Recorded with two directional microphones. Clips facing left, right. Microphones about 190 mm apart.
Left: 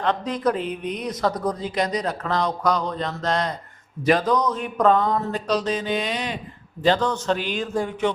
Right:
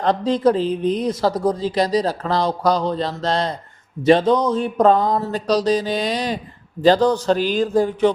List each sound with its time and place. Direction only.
0.0 s speech: 30° right (ahead or behind)